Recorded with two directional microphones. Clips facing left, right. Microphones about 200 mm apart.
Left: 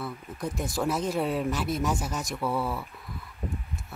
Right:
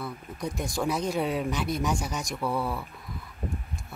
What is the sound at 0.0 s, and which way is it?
Speech, centre (ahead or behind).